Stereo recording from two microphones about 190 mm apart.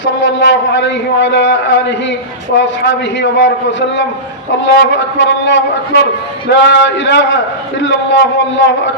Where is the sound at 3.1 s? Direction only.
70° left (ahead or behind).